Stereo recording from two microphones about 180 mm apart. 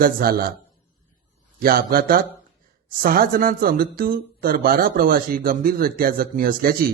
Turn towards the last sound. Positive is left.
turn(degrees=-50)  # may be behind; listen again after turning